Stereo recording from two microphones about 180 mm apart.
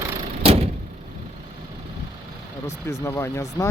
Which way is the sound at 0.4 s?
35° right (ahead or behind).